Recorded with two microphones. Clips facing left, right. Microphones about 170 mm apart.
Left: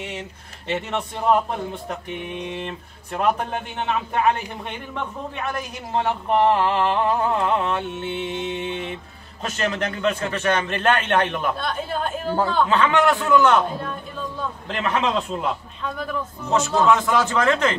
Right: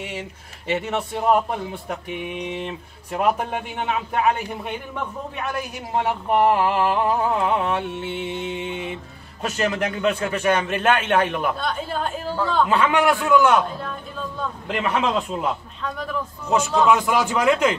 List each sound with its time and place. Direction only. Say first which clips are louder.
0.0 s speech: right 1 dB; 10° right (ahead or behind)
14.7 s a man's voice: right 1 dB; 5° right (ahead or behind)
16.4 s speech: even; 10° right (ahead or behind)